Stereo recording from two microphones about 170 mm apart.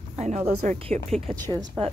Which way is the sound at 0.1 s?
40° right (ahead or behind).